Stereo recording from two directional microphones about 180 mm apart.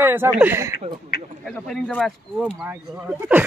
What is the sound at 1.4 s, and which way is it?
Speech, 5° left (ahead or behind).